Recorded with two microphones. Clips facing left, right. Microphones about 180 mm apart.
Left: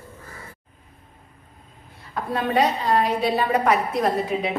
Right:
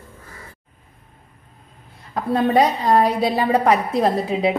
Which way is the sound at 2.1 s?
35° right (ahead or behind).